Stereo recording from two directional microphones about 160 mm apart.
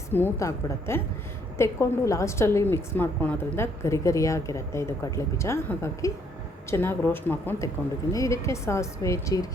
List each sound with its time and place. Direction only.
0.1 s a woman's voice: 15° left (ahead or behind)